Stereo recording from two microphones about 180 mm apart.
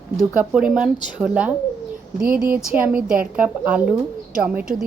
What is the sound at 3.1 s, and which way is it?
Speech, 50° right (ahead or behind).